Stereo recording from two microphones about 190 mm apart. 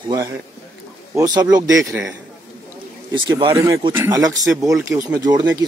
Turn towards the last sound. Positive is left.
turn(degrees=-20)  # may be behind; listen again after turning